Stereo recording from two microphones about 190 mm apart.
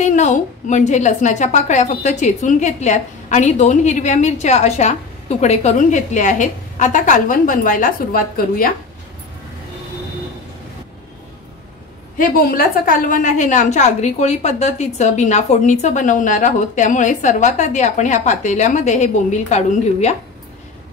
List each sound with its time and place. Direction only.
0.0 s a woman's voice: 40° left (ahead or behind)
12.2 s a woman's voice: 50° left (ahead or behind)